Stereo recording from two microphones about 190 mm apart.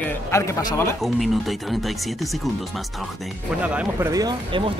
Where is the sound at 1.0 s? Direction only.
Centre (ahead or behind).